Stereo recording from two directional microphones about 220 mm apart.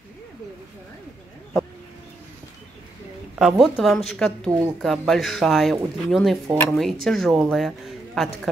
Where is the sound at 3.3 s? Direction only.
Centre (ahead or behind).